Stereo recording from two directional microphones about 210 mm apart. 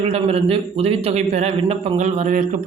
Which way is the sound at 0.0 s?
30° right (ahead or behind).